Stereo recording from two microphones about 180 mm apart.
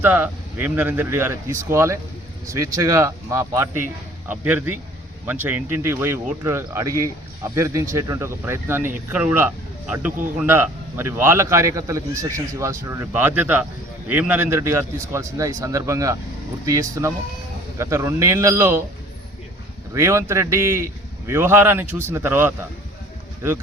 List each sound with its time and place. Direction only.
0.0 s a man's voice: 10° right (ahead or behind)
19.9 s a man's voice: 15° right (ahead or behind)